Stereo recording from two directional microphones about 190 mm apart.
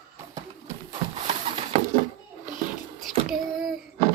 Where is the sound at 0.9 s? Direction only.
35° right (ahead or behind).